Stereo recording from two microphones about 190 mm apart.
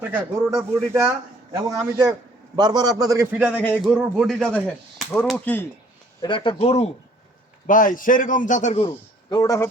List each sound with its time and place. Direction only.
0.0 s a man's voice: 10° right (ahead or behind)
3.8 s speech: centre (ahead or behind)
6.2 s speech: 25° left (ahead or behind)
7.7 s a man's voice: 45° left (ahead or behind)
8.8 s a man's voice: 25° left (ahead or behind)